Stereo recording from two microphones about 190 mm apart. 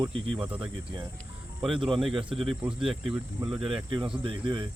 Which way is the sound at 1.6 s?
Centre (ahead or behind).